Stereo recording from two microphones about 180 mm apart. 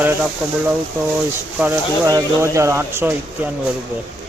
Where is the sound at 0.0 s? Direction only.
10° right (ahead or behind).